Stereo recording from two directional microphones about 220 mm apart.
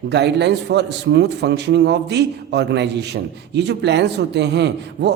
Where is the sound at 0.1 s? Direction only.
50° right (ahead or behind).